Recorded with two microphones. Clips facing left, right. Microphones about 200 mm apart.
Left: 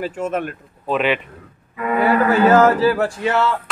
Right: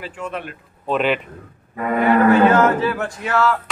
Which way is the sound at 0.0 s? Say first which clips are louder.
Left 6 dB; 45° left (ahead or behind).